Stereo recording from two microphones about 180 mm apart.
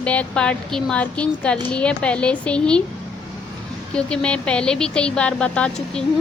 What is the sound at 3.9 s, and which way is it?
Speech, 5° left (ahead or behind).